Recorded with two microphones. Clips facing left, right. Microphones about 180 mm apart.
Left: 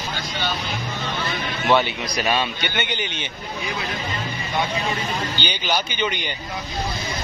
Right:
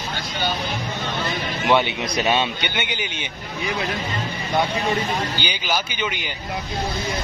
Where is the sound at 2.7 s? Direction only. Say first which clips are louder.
Left 1 dB; 10° right (ahead or behind).